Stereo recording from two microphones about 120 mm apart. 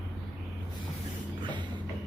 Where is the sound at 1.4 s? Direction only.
40° right (ahead or behind).